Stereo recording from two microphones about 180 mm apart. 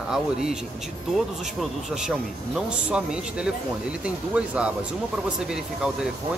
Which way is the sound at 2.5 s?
5° right (ahead or behind).